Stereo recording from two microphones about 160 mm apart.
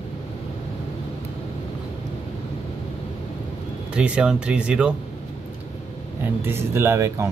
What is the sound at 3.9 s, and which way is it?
Speech, 5° right (ahead or behind).